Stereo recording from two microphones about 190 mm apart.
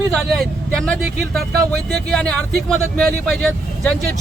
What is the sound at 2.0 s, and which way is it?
Speech, 5° left (ahead or behind).